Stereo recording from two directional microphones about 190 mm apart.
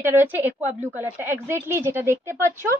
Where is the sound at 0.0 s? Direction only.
10° right (ahead or behind).